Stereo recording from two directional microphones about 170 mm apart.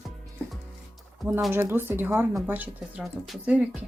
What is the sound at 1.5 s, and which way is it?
Speech, 15° right (ahead or behind).